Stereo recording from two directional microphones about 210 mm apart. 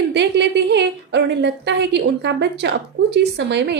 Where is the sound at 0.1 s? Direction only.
55° right (ahead or behind).